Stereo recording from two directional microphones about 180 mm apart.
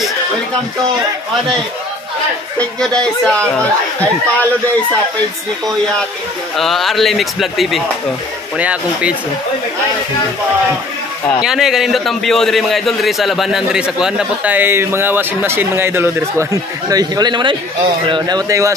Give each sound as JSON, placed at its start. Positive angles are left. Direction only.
{"t": 2.8, "sound": "a man's voice", "side_deg": 5}
{"t": 6.5, "sound": "a man's voice", "side_deg": 0}
{"t": 11.4, "sound": "a man's voice", "side_deg": 0}